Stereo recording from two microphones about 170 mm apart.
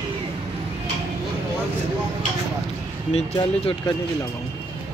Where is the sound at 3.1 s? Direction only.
35° left (ahead or behind).